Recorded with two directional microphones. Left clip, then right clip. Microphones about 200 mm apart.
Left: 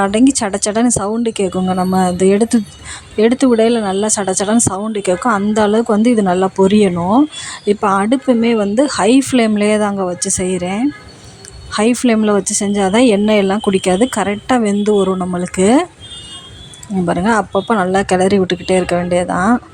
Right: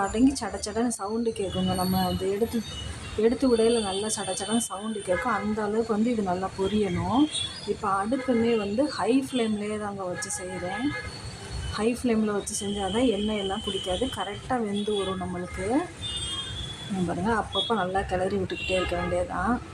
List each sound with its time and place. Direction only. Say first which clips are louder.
0.0 s a woman's voice: left 12 dB; 40° left (ahead or behind)
11.7 s a woman's voice: left 13 dB; 40° left (ahead or behind)
17.1 s a woman's voice: left 13 dB; 45° left (ahead or behind)